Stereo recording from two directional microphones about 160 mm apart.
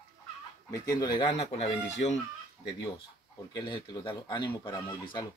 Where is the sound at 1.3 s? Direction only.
40° left (ahead or behind).